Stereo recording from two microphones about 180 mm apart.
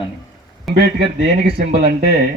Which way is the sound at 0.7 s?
60° right (ahead or behind).